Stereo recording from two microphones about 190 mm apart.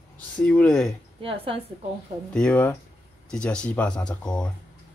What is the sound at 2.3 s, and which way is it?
Speech, 5° left (ahead or behind).